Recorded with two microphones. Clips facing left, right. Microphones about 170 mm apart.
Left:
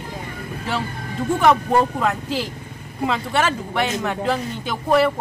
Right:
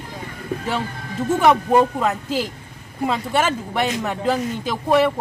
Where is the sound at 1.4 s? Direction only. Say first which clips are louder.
Right 1 dB; 15° right (ahead or behind).